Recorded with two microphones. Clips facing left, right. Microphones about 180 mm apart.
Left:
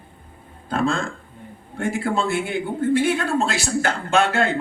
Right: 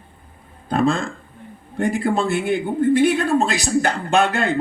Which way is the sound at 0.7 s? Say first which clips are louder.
Right 3 dB; 15° right (ahead or behind).